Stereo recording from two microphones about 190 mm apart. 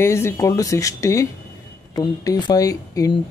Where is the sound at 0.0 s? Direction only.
15° left (ahead or behind).